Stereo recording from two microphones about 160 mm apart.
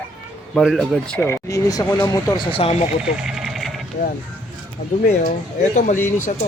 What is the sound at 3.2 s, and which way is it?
Vehicle, centre (ahead or behind).